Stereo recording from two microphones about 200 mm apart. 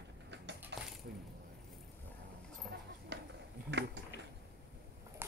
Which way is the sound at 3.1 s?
55° right (ahead or behind).